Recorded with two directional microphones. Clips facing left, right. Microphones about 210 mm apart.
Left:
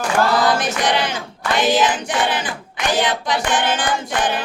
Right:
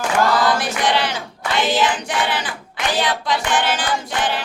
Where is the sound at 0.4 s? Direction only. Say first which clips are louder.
Left 1 dB; 20° left (ahead or behind).